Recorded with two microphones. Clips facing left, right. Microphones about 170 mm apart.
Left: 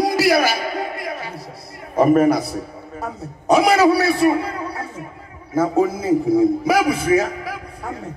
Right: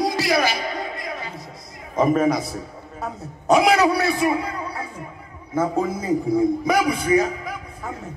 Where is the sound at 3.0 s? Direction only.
Centre (ahead or behind).